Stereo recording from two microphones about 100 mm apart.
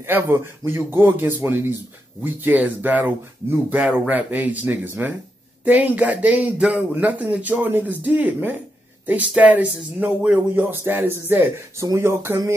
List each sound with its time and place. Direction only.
0.0 s speech: 25° right (ahead or behind)